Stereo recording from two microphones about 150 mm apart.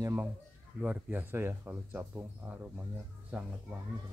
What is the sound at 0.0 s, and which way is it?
Speech, 15° right (ahead or behind).